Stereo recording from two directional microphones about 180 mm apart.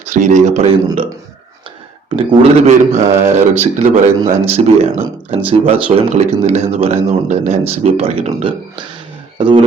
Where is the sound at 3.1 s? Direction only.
15° right (ahead or behind).